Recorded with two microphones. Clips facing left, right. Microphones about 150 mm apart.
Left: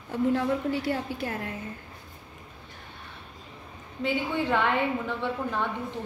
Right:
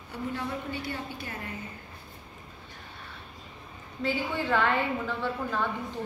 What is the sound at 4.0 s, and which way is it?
A woman's voice, 20° left (ahead or behind).